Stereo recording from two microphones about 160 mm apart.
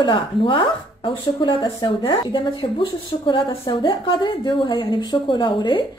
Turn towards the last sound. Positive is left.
turn(degrees=30)  # may be behind; listen again after turning